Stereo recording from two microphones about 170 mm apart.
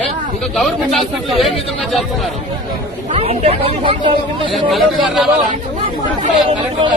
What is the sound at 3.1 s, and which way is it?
Speech, 35° right (ahead or behind).